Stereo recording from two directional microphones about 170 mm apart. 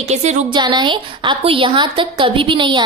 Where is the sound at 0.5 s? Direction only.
25° right (ahead or behind).